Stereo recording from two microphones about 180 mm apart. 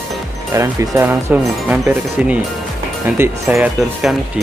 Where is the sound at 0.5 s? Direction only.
15° right (ahead or behind).